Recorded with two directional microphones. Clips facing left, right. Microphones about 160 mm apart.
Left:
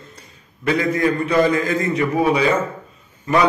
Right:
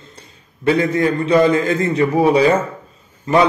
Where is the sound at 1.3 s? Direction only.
25° right (ahead or behind).